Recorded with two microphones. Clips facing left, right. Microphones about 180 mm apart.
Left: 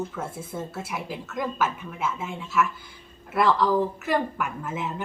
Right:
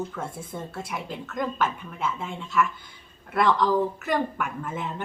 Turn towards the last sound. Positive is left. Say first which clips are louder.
# left 1 dB
turn(degrees=5)  # may be behind; listen again after turning